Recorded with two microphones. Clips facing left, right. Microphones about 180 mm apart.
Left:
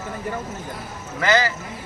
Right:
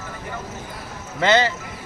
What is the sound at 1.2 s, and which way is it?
Speech, 25° right (ahead or behind).